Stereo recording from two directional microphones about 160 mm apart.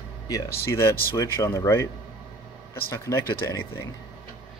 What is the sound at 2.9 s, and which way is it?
Speech, 20° left (ahead or behind).